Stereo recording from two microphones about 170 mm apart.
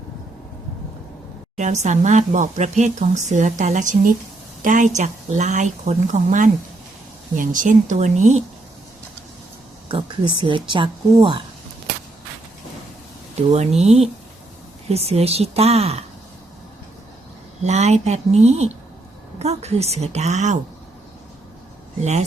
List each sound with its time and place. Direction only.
1.5 s speech: 45° right (ahead or behind)
9.9 s speech: 30° right (ahead or behind)
13.5 s a woman's voice: 40° right (ahead or behind)
17.6 s a woman's voice: 40° right (ahead or behind)